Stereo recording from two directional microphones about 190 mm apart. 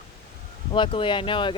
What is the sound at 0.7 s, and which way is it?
Speech, 25° left (ahead or behind).